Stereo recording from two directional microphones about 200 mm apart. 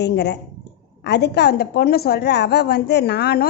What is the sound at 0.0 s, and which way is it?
A woman's voice, 55° left (ahead or behind).